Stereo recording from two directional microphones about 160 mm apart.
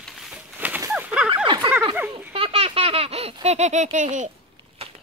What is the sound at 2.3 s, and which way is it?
Baby laughter, 35° right (ahead or behind).